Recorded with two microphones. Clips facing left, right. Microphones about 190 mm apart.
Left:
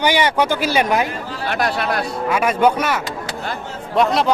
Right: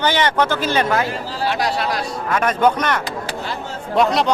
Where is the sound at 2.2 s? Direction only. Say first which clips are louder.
Left 1 dB; 10° left (ahead or behind).